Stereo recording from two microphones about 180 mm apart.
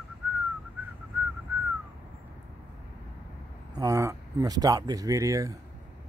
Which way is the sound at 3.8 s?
20° right (ahead or behind).